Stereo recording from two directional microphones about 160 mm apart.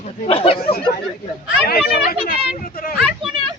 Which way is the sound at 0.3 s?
35° left (ahead or behind).